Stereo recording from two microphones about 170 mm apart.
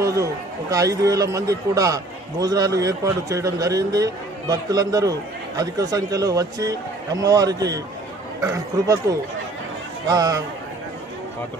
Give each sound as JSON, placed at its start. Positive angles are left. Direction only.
{"t": 0.0, "sound": "speech", "side_deg": -20}
{"t": 10.0, "sound": "speech", "side_deg": -20}